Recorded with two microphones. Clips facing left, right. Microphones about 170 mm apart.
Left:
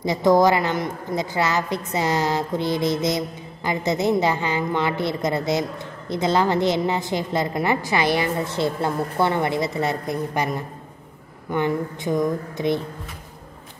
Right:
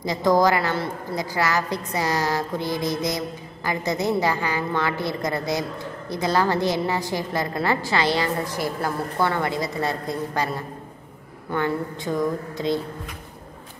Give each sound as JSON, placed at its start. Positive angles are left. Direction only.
{"t": 0.0, "sound": "a woman's voice", "side_deg": 20}